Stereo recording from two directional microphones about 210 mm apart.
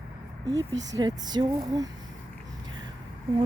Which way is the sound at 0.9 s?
20° right (ahead or behind).